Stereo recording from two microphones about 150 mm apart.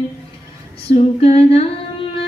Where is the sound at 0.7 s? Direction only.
40° left (ahead or behind).